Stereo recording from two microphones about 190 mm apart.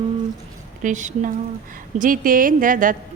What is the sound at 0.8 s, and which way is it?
A woman's voice, 40° right (ahead or behind).